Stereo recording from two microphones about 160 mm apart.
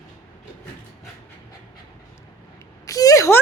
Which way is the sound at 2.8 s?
20° left (ahead or behind).